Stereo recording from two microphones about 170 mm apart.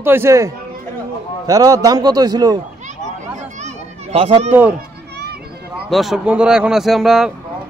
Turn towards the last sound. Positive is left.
turn(degrees=0)  # may be behind; listen again after turning